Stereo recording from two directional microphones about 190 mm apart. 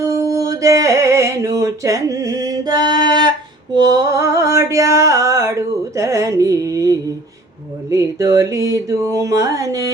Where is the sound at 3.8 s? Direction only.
20° right (ahead or behind).